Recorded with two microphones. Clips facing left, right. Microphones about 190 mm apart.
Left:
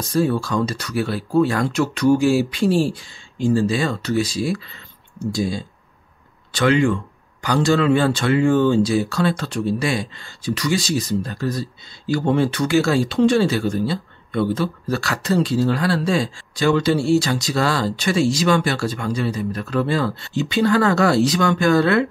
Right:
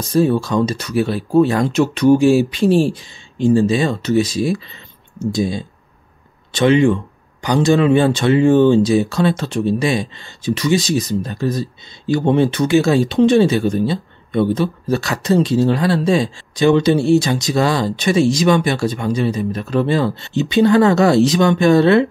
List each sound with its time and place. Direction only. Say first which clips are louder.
0.1 s speech: right 5 dB; 20° right (ahead or behind)